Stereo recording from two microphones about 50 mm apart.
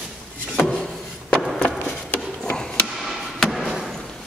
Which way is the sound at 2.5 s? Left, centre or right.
Centre.